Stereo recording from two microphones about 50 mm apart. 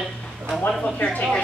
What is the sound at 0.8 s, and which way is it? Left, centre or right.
Speech, left.